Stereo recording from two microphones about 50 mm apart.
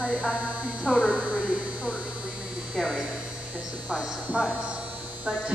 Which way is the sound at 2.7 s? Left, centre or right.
Centre.